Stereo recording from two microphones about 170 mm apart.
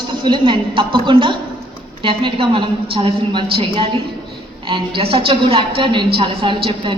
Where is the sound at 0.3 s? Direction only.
30° right (ahead or behind).